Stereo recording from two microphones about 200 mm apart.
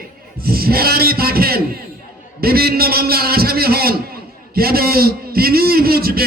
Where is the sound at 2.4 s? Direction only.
50° right (ahead or behind).